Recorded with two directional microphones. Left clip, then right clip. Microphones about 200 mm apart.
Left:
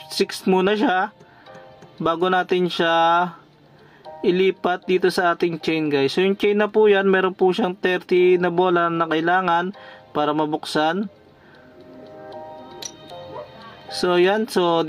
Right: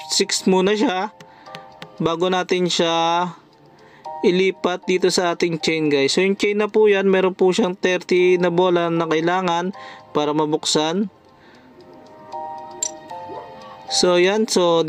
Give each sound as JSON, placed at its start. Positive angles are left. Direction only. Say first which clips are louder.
{"t": 0.0, "sound": "speech", "louder": "right 3 dB", "side_deg": -20}
{"t": 12.8, "sound": "music", "louder": "right 7 dB", "side_deg": 0}
{"t": 13.8, "sound": "speech", "louder": "right 2 dB", "side_deg": -20}